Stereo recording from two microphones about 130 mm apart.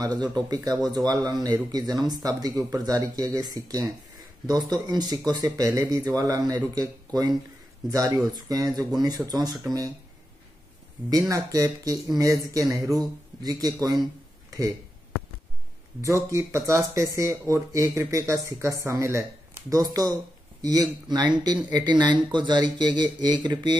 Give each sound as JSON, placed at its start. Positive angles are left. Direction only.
{"t": 0.0, "sound": "speech", "side_deg": -30}
{"t": 11.1, "sound": "speech", "side_deg": -25}
{"t": 16.3, "sound": "speech", "side_deg": -25}